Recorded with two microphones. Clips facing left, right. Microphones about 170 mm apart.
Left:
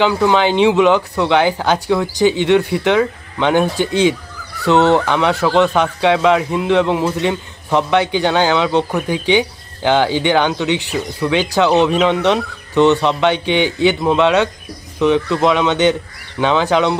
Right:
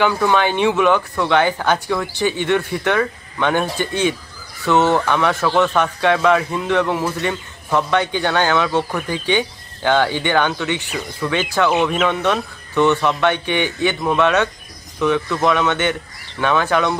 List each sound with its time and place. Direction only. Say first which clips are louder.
0.0 s speech: left 3 dB; 15° left (ahead or behind)